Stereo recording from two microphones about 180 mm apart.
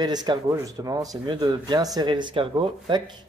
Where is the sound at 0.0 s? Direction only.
20° right (ahead or behind).